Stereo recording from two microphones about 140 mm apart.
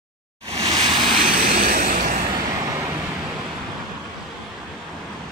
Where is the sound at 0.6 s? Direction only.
30° right (ahead or behind).